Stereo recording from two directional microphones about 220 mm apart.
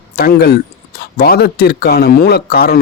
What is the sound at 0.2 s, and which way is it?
Speech, 45° left (ahead or behind).